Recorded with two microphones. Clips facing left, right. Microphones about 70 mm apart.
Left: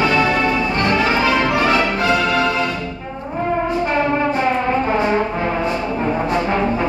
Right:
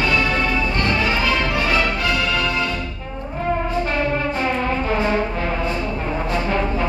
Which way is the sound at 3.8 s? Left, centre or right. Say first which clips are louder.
Left 4 dB; centre.